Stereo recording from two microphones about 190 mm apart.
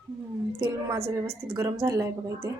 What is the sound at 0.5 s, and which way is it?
A woman's voice, 15° right (ahead or behind).